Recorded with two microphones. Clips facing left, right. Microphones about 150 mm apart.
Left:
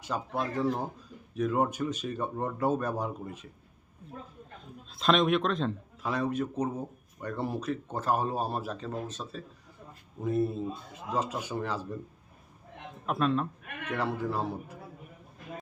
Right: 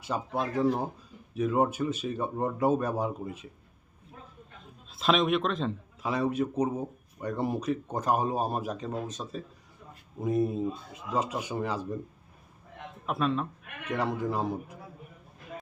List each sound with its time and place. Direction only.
0.1 s a man's voice: 10° right (ahead or behind)
4.9 s a man's voice: centre (ahead or behind)
13.1 s a man's voice: centre (ahead or behind)
13.8 s a man's voice: 10° right (ahead or behind)